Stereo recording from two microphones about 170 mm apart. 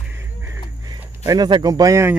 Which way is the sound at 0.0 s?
15° right (ahead or behind).